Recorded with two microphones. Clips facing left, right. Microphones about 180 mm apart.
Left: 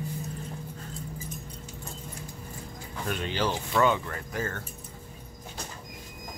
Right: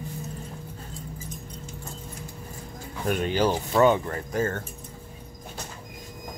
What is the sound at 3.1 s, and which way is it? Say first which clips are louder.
Speech: right 6 dB; 45° right (ahead or behind).